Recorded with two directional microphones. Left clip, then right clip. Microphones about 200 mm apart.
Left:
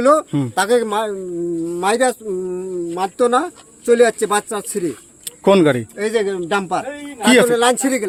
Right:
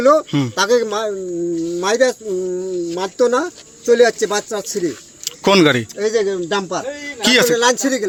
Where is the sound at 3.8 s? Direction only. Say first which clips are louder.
Right 1 dB; 15° left (ahead or behind).